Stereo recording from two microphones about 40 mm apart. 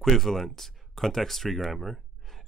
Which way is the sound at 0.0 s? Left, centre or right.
Centre.